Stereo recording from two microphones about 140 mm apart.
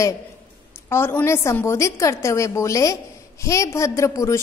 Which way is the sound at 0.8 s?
15° left (ahead or behind).